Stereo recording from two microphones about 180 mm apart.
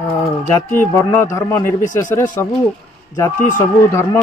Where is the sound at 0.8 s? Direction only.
15° left (ahead or behind).